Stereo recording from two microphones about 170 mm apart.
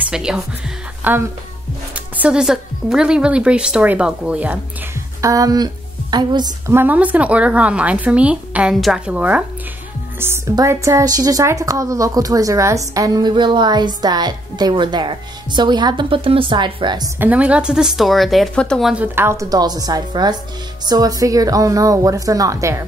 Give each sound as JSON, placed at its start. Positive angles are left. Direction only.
{"t": 0.0, "sound": "speech", "side_deg": -5}
{"t": 5.2, "sound": "speech", "side_deg": -20}
{"t": 6.7, "sound": "speech", "side_deg": -10}
{"t": 17.2, "sound": "speech", "side_deg": -10}
{"t": 19.1, "sound": "speech", "side_deg": -15}